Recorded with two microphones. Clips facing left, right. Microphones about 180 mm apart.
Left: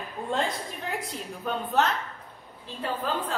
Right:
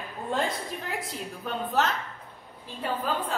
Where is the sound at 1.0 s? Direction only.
Centre (ahead or behind).